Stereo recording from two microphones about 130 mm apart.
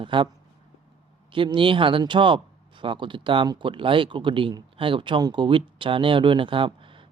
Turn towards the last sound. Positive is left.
turn(degrees=-40)  # may be behind; listen again after turning